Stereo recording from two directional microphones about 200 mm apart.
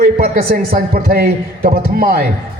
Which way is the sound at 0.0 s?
50° right (ahead or behind).